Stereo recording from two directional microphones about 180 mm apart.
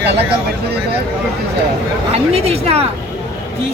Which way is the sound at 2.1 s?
35° right (ahead or behind).